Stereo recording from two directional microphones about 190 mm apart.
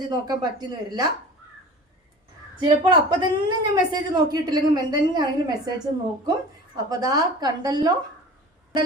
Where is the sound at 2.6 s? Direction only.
25° right (ahead or behind).